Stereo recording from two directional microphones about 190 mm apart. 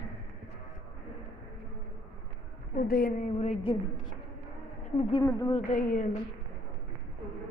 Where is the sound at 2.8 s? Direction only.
50° left (ahead or behind).